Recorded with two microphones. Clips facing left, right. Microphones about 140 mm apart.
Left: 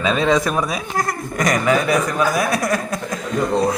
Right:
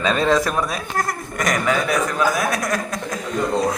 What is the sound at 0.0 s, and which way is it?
Speech, centre (ahead or behind).